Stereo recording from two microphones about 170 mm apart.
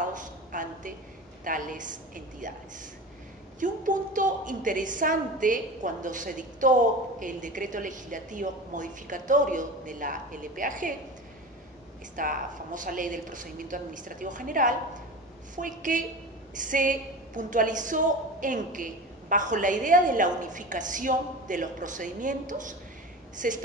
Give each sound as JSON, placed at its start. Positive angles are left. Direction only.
{"t": 0.1, "sound": "a sound", "side_deg": -50}
{"t": 1.4, "sound": "a woman's voice", "side_deg": -50}
{"t": 3.5, "sound": "a woman's voice", "side_deg": -50}
{"t": 12.2, "sound": "a woman's voice", "side_deg": -50}